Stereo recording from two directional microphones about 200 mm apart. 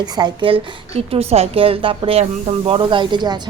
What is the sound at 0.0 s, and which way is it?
A woman's voice, 25° right (ahead or behind).